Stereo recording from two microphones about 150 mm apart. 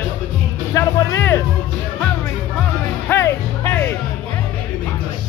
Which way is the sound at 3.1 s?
15° left (ahead or behind).